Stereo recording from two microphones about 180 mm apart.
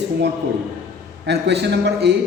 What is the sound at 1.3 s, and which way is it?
Speech, 70° right (ahead or behind).